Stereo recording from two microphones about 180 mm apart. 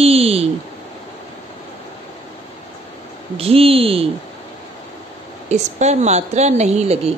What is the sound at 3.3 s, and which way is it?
Speech, 30° right (ahead or behind).